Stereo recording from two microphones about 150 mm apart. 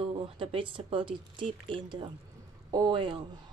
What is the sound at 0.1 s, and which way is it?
A woman's voice, 40° right (ahead or behind).